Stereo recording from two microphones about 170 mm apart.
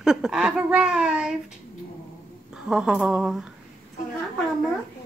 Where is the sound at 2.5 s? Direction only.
5° right (ahead or behind).